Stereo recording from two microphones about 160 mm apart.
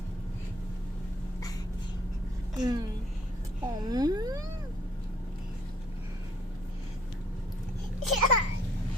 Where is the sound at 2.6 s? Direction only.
25° right (ahead or behind).